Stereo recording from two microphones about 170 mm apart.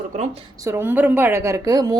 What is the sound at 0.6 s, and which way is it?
A woman's voice, 15° right (ahead or behind).